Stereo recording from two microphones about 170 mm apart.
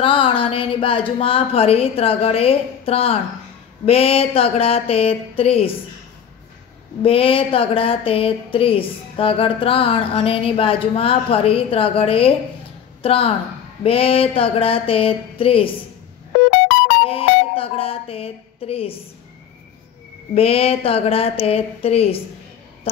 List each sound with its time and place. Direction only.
0.0 s speech: 30° left (ahead or behind)
7.0 s a woman's voice: 35° left (ahead or behind)
17.0 s a sound: 35° left (ahead or behind)
20.3 s speech: 35° left (ahead or behind)